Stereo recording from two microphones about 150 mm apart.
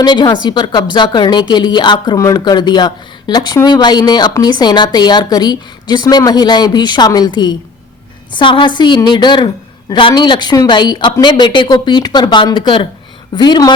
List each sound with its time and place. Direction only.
0.0 s a woman's voice: 30° left (ahead or behind)